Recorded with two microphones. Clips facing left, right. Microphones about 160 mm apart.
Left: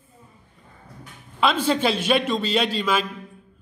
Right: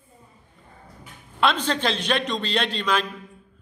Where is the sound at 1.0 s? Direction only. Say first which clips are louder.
Even; centre (ahead or behind).